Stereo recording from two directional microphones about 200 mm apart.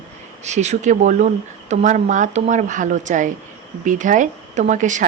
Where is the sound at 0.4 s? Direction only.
35° right (ahead or behind).